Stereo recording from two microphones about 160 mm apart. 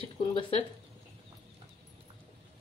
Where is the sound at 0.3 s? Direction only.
35° left (ahead or behind).